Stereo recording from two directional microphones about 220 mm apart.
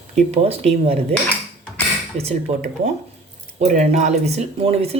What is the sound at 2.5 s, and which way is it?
Speech, 30° right (ahead or behind).